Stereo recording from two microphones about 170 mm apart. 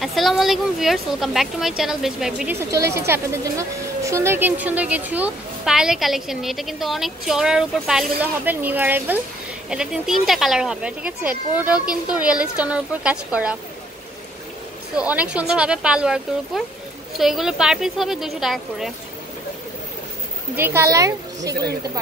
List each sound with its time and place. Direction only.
0.0 s speech: centre (ahead or behind)
2.7 s speech: 15° right (ahead or behind)
15.0 s speech: 10° right (ahead or behind)
20.5 s speech: 15° right (ahead or behind)